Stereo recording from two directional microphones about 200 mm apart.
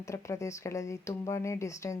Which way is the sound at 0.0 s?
15° left (ahead or behind).